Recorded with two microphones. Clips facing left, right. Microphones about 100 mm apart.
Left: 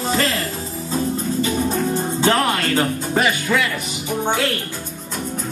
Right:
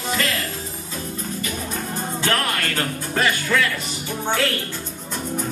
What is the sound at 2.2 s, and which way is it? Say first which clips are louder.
Music: left 5 dB; 20° left (ahead or behind).